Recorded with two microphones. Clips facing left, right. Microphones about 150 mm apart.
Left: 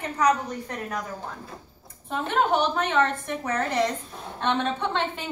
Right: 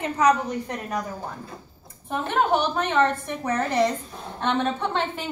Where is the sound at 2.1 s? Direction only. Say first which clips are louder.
Right 1 dB; 10° right (ahead or behind).